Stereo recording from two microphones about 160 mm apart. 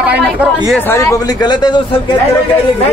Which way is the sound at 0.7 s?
15° left (ahead or behind).